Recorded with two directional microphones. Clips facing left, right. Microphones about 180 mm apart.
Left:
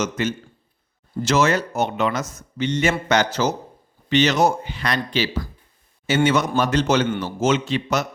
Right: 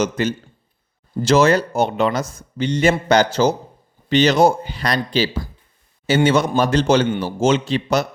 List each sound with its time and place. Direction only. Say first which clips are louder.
0.0 s a man's voice: right 4 dB; 35° right (ahead or behind)